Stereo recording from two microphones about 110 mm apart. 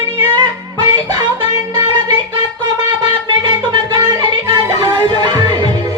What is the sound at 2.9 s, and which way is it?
Music, 45° right (ahead or behind).